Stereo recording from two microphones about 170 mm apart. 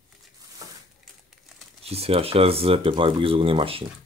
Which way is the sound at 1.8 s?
35° right (ahead or behind).